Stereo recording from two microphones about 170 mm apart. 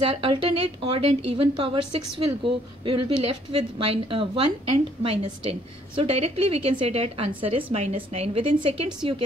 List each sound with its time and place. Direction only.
0.0 s a woman's voice: 35° right (ahead or behind)